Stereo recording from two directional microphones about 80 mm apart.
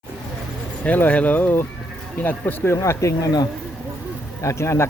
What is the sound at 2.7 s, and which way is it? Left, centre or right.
Speech, left.